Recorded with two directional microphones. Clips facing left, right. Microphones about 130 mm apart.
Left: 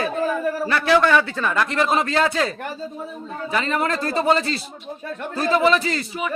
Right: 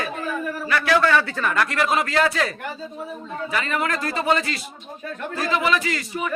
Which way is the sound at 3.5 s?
30° left (ahead or behind).